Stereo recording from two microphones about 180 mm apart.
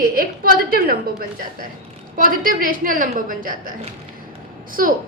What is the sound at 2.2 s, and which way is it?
A woman's voice, 50° right (ahead or behind).